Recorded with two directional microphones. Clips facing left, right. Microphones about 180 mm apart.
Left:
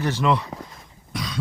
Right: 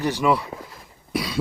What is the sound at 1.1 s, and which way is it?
Cough, 10° right (ahead or behind).